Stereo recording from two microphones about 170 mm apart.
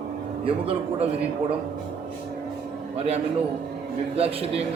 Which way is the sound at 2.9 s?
35° right (ahead or behind).